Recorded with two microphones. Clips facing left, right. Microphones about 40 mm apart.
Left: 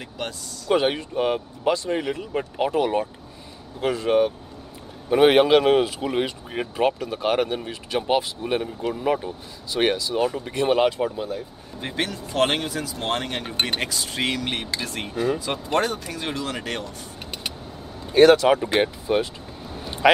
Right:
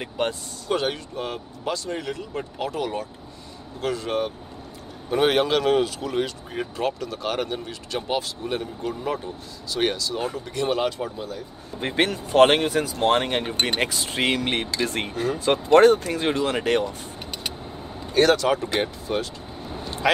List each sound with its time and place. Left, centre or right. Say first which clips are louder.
0.0 s speech: right 6 dB; right
0.7 s speech: left 6 dB; left
11.8 s speech: right 5 dB; right
18.1 s speech: left 5 dB; centre